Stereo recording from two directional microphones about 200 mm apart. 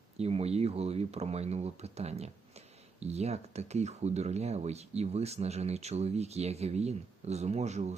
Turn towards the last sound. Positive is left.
turn(degrees=-35)  # may be behind; listen again after turning